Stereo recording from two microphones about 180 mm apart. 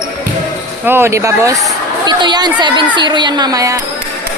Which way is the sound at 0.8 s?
15° right (ahead or behind).